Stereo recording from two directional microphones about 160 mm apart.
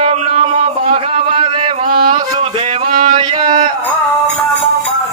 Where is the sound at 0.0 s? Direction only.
40° right (ahead or behind).